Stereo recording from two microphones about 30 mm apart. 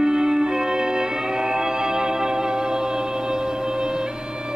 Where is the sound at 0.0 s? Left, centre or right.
Right.